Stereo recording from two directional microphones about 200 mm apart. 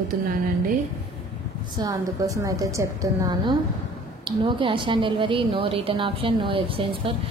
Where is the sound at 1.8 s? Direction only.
15° right (ahead or behind).